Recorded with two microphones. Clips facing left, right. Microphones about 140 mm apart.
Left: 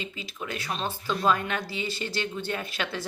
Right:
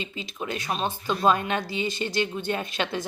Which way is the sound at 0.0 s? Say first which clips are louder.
Right 3 dB; 25° right (ahead or behind).